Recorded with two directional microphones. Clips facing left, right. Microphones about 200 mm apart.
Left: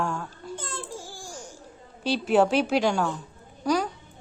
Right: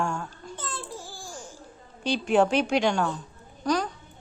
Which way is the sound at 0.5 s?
45° left (ahead or behind).